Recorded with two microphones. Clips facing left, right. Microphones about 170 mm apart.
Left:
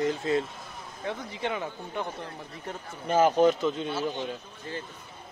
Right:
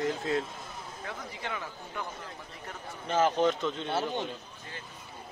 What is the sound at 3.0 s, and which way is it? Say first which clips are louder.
Speech: left 5 dB; 10° left (ahead or behind).